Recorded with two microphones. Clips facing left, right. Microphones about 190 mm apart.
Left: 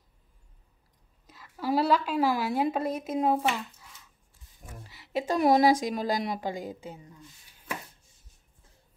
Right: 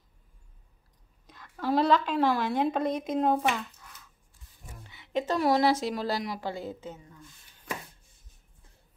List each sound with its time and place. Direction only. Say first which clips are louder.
1.2 s a woman's voice: even; 5° left (ahead or behind)